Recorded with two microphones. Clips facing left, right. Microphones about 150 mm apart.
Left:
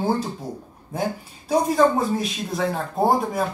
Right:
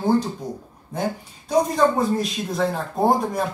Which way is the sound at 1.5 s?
Centre (ahead or behind).